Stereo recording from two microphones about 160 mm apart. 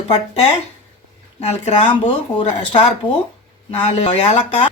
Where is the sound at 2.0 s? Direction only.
30° left (ahead or behind).